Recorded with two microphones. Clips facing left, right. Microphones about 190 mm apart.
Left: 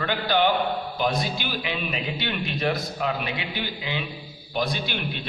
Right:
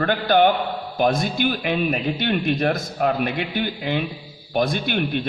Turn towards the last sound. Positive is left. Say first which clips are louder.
# right 7 dB
turn(degrees=-50)  # may be behind; listen again after turning